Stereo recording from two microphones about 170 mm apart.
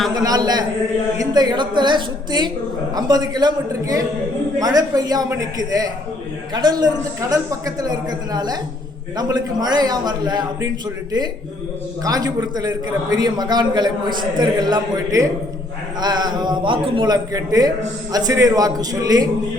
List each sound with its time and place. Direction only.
0.1 s a man's voice: 20° right (ahead or behind)
12.0 s a man's voice: 20° right (ahead or behind)